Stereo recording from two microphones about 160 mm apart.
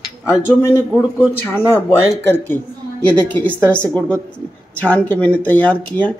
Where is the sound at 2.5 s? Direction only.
10° left (ahead or behind).